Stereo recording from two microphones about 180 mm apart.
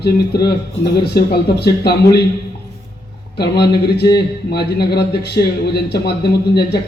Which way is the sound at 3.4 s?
65° left (ahead or behind).